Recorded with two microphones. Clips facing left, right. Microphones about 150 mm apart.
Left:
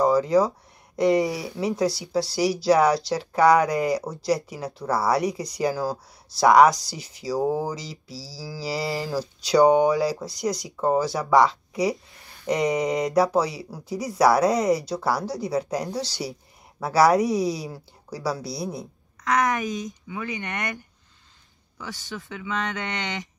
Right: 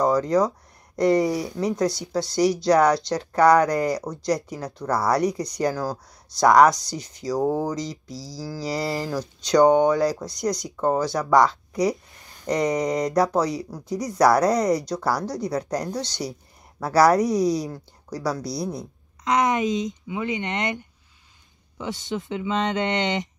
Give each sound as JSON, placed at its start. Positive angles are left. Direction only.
{"t": 0.0, "sound": "speech", "side_deg": 5}
{"t": 1.3, "sound": "speech", "side_deg": -45}
{"t": 1.6, "sound": "speech", "side_deg": 5}
{"t": 19.2, "sound": "speech", "side_deg": -20}